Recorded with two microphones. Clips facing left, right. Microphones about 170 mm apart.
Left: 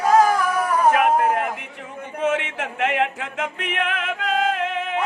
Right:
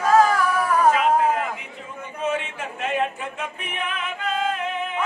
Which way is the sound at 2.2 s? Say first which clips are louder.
Left 3 dB; 80° left.